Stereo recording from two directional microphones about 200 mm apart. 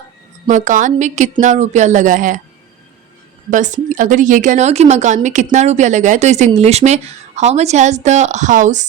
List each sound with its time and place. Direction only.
0.4 s speech: 40° right (ahead or behind)
3.5 s speech: 40° right (ahead or behind)